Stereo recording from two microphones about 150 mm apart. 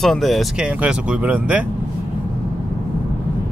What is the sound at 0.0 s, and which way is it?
Speech, centre (ahead or behind).